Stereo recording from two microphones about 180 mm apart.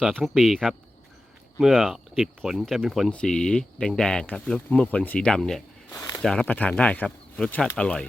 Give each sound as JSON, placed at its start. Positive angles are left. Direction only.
{"t": 0.0, "sound": "speech", "side_deg": 0}
{"t": 5.9, "sound": "a sound", "side_deg": 20}
{"t": 6.2, "sound": "speech", "side_deg": 5}